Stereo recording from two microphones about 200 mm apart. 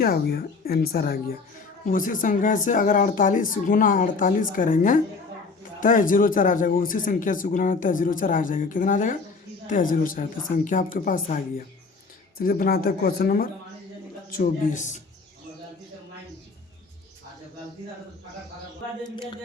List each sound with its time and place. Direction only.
0.0 s speech: 50° left (ahead or behind)